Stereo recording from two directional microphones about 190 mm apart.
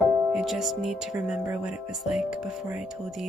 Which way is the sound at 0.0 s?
Centre (ahead or behind).